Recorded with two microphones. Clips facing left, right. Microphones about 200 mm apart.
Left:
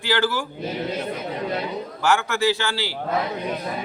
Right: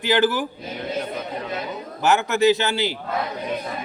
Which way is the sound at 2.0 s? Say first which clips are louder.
Right 3 dB; 20° right (ahead or behind).